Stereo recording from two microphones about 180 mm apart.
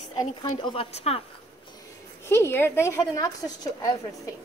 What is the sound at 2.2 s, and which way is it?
A woman's voice, 15° left (ahead or behind).